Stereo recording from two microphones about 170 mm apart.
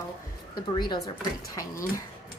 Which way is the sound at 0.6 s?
25° left (ahead or behind).